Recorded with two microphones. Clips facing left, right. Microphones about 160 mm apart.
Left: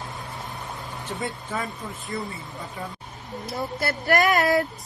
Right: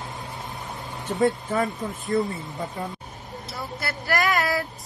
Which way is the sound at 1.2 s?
45° right (ahead or behind).